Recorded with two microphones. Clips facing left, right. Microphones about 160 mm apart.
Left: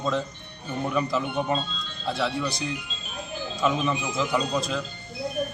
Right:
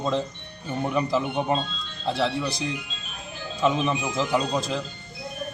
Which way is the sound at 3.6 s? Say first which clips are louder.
Right 2 dB; 25° right (ahead or behind).